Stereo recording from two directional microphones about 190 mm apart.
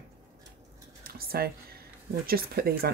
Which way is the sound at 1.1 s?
50° right (ahead or behind).